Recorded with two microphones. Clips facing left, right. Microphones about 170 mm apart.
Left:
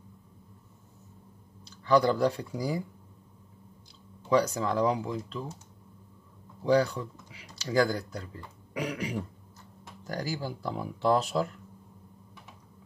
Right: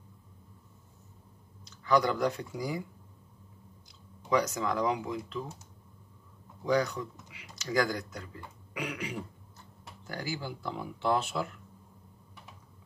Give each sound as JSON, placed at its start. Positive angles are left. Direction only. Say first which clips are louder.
{"t": 1.6, "sound": "speech", "louder": "left 3 dB", "side_deg": 30}
{"t": 4.3, "sound": "speech", "louder": "left 3 dB", "side_deg": 30}
{"t": 6.6, "sound": "speech", "louder": "left 4 dB", "side_deg": 30}